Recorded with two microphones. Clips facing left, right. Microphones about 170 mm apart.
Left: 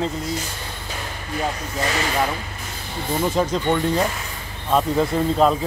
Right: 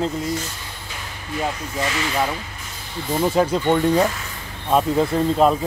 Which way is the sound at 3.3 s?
10° right (ahead or behind).